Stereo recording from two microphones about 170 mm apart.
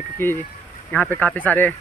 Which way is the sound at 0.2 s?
15° left (ahead or behind).